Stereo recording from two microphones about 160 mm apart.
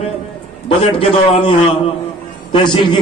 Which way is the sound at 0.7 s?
35° left (ahead or behind).